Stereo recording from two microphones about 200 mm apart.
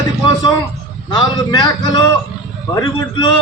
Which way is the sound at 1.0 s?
20° left (ahead or behind).